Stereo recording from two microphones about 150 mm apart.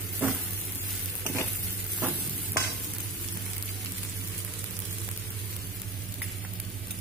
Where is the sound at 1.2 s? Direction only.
20° left (ahead or behind).